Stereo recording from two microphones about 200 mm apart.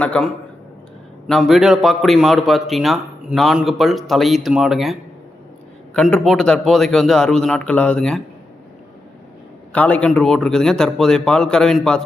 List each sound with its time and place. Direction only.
0.0 s a man's voice: 5° left (ahead or behind)
1.3 s a man's voice: centre (ahead or behind)
9.7 s a man's voice: 5° left (ahead or behind)